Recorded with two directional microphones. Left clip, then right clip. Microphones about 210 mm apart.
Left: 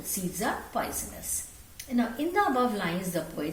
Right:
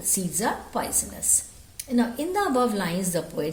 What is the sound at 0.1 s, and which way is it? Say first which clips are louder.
A woman's voice: right 4 dB; 50° right (ahead or behind).